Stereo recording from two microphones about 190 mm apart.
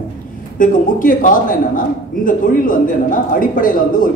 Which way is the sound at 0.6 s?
45° left (ahead or behind).